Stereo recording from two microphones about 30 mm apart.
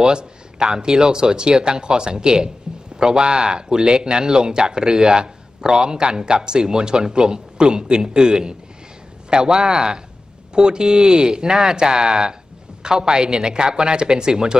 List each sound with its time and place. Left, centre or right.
0.0 s speech: right
2.7 s a sound: right
3.0 s speech: right